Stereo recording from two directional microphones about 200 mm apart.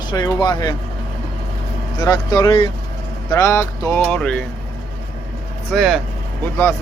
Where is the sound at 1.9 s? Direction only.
20° left (ahead or behind).